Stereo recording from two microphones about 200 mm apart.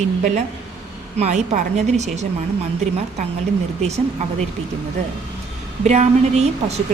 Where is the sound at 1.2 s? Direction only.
35° right (ahead or behind).